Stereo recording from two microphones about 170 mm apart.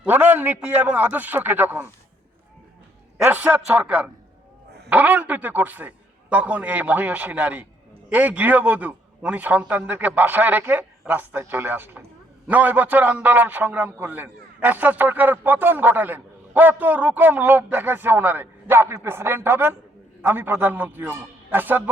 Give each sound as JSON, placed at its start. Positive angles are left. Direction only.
{"t": 0.0, "sound": "a man's voice", "side_deg": -10}
{"t": 3.2, "sound": "a man's voice", "side_deg": -10}